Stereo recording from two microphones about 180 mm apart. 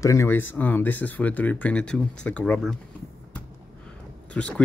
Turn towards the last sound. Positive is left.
turn(degrees=5)  # may be behind; listen again after turning